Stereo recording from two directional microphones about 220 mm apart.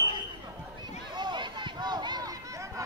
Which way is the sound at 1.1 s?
20° right (ahead or behind).